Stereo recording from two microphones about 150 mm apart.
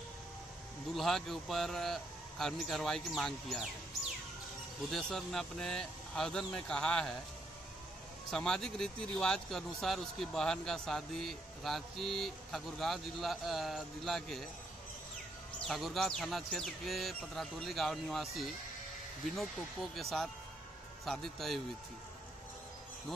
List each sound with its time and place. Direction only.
0.9 s speech: centre (ahead or behind)
4.9 s speech: 5° left (ahead or behind)
8.3 s speech: 5° left (ahead or behind)
15.6 s speech: centre (ahead or behind)